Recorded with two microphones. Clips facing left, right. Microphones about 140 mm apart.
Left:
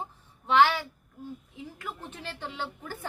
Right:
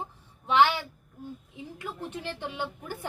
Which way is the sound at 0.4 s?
15° right (ahead or behind).